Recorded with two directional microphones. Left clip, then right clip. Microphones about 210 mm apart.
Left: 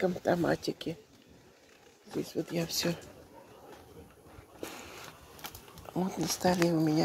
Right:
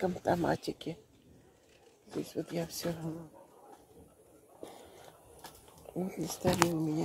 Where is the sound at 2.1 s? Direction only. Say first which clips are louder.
Left 3 dB; 40° left (ahead or behind).